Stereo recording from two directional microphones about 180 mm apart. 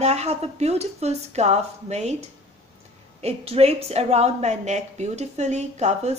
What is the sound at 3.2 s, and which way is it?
A woman's voice, 35° right (ahead or behind).